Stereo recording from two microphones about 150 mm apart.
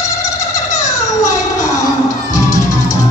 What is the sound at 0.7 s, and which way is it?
Music, 20° left (ahead or behind).